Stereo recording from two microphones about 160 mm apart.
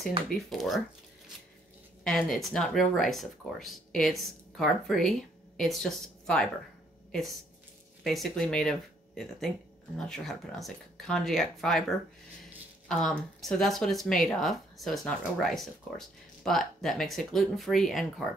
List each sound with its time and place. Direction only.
0.5 s speech: centre (ahead or behind)
2.0 s a woman's voice: 5° left (ahead or behind)
12.8 s speech: 5° left (ahead or behind)